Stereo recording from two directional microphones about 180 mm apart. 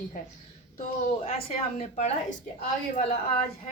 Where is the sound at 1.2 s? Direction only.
35° left (ahead or behind).